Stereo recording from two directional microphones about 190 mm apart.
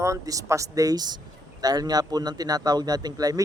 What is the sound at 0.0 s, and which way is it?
A man's voice, 15° right (ahead or behind).